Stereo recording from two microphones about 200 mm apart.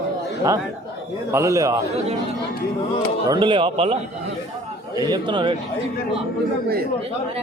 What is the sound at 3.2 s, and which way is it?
A man's voice, 20° right (ahead or behind).